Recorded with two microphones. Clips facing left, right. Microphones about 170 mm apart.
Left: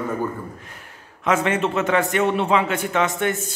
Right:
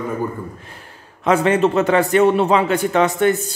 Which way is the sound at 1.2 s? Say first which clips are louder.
Right 5 dB; 35° right (ahead or behind).